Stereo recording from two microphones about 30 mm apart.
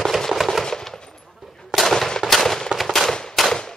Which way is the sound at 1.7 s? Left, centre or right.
Centre.